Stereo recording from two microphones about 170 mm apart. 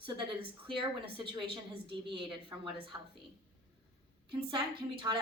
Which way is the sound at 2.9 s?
20° right (ahead or behind).